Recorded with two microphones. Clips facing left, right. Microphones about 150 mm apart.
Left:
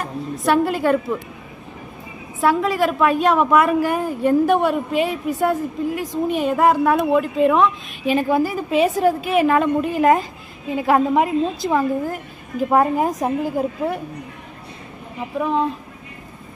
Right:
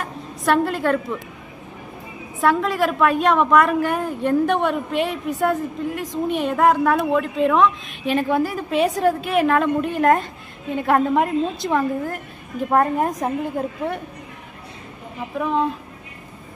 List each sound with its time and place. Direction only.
0.0 s a woman's voice: centre (ahead or behind)
2.4 s a woman's voice: centre (ahead or behind)
15.3 s a woman's voice: centre (ahead or behind)